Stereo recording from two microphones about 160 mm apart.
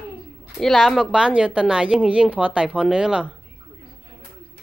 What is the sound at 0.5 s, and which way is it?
A woman's voice, centre (ahead or behind).